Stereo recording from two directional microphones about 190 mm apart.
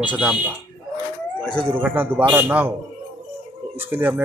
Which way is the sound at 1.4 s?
5° left (ahead or behind).